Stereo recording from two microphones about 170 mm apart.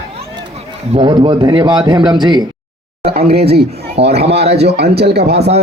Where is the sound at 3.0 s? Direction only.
65° right (ahead or behind).